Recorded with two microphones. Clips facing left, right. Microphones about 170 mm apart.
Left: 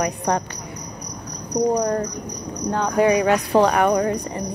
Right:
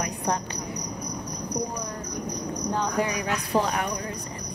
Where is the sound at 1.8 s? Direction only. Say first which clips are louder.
Left 11 dB; 65° left (ahead or behind).